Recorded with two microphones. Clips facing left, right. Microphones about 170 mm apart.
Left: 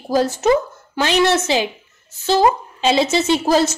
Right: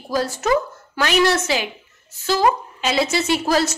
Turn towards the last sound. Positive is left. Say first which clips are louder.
# left 3 dB
turn(degrees=25)  # may be behind; listen again after turning